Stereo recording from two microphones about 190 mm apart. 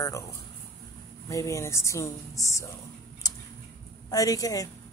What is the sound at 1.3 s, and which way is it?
Speech, 15° left (ahead or behind).